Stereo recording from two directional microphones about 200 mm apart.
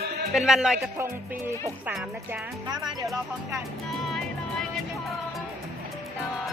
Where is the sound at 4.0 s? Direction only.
Centre (ahead or behind).